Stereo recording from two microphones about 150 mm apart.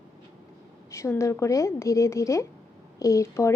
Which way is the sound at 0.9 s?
20° left (ahead or behind).